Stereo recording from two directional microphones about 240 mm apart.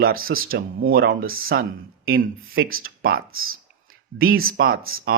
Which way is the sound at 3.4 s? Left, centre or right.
Right.